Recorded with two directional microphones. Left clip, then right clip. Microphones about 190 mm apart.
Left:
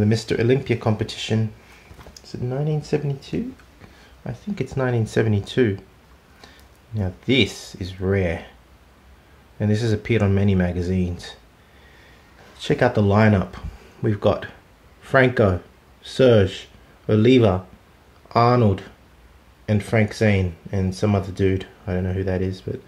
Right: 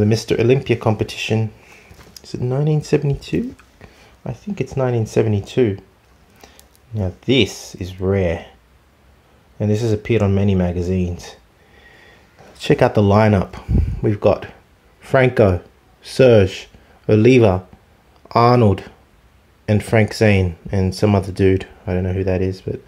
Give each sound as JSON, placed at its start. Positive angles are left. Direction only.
{"t": 0.0, "sound": "speech", "side_deg": -30}
{"t": 2.1, "sound": "speech", "side_deg": -45}
{"t": 4.2, "sound": "speech", "side_deg": -25}
{"t": 9.6, "sound": "speech", "side_deg": -20}
{"t": 12.5, "sound": "speech", "side_deg": -35}